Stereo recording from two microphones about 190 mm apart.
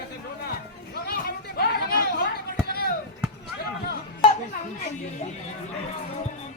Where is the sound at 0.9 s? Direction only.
55° left (ahead or behind).